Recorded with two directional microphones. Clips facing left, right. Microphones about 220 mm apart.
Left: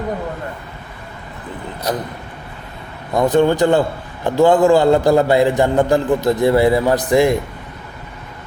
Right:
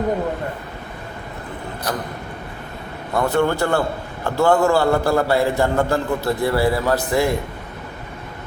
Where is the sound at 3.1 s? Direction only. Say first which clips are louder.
Left 5 dB; 20° left (ahead or behind).